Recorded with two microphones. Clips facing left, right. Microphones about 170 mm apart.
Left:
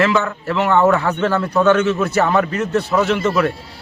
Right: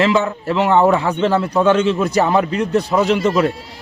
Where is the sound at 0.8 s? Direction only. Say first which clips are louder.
Right 1 dB; 10° right (ahead or behind).